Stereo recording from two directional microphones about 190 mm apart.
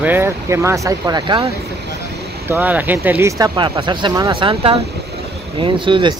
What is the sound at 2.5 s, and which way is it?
Speech, 10° right (ahead or behind).